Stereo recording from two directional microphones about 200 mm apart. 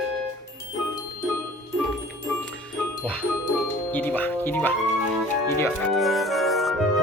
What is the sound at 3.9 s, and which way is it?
Doorbell, 10° left (ahead or behind).